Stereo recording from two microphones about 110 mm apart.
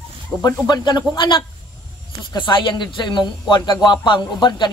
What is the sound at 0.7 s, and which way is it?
Speech, 40° left (ahead or behind).